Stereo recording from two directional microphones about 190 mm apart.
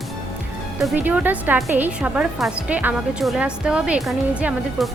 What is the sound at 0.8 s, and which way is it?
A woman's voice, 10° right (ahead or behind).